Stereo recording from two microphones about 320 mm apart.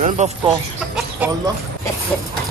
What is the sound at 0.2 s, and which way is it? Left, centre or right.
Speech, right.